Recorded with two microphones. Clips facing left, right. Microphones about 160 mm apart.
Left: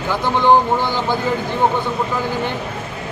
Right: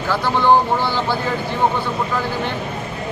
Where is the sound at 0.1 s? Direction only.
15° left (ahead or behind).